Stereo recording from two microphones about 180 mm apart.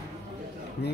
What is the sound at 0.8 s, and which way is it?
Speech, 70° left (ahead or behind).